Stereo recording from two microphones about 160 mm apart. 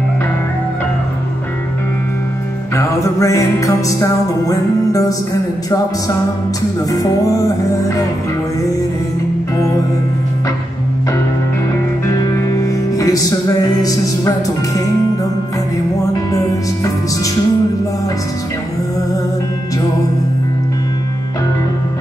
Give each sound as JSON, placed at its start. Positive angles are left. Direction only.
{"t": 2.7, "sound": "music", "side_deg": 20}
{"t": 12.1, "sound": "music", "side_deg": 20}
{"t": 16.3, "sound": "music", "side_deg": 20}